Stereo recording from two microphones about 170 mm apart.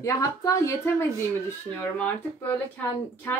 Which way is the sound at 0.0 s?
20° left (ahead or behind).